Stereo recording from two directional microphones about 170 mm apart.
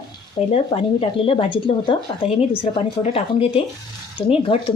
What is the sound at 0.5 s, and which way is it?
Speech, 35° left (ahead or behind).